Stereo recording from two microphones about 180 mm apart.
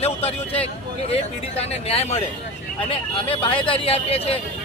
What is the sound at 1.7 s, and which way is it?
Speech, 35° left (ahead or behind).